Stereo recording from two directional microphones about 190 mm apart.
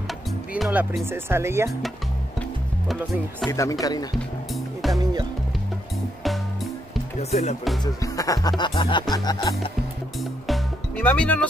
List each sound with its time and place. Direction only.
0.5 s speech: 5° right (ahead or behind)
2.9 s speech: centre (ahead or behind)
3.4 s speech: 15° left (ahead or behind)
4.6 s music: centre (ahead or behind)
6.2 s music: centre (ahead or behind)
7.2 s speech: 35° left (ahead or behind)
7.8 s speech: 20° left (ahead or behind)
10.4 s music: 5° left (ahead or behind)